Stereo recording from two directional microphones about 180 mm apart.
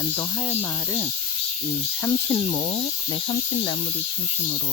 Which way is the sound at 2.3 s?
30° left (ahead or behind).